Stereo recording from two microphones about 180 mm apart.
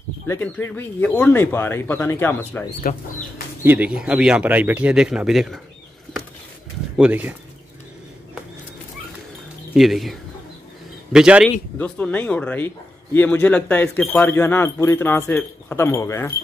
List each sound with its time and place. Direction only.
0.3 s speech: 10° left (ahead or behind)
2.8 s speech: 50° left (ahead or behind)
3.6 s speech: 10° right (ahead or behind)
7.0 s speech: 10° right (ahead or behind)
9.8 s speech: centre (ahead or behind)
11.1 s speech: 5° right (ahead or behind)
11.8 s speech: 10° left (ahead or behind)